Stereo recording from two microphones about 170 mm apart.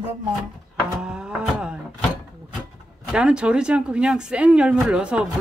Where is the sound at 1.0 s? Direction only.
5° right (ahead or behind).